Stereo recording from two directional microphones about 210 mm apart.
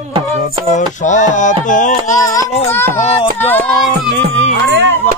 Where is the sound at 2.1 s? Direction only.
15° left (ahead or behind).